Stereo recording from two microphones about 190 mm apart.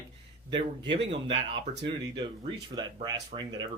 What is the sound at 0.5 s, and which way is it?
Speech, 25° right (ahead or behind).